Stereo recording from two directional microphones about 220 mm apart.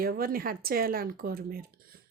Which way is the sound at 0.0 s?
40° right (ahead or behind).